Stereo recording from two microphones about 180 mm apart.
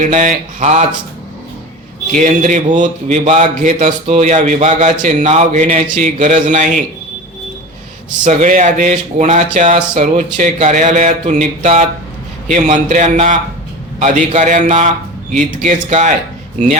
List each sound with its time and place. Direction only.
0.0 s speech: 40° right (ahead or behind)
2.1 s speech: 45° right (ahead or behind)
8.2 s speech: 45° right (ahead or behind)